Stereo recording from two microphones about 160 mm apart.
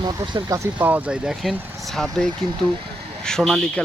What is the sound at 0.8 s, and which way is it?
Speech, 10° right (ahead or behind).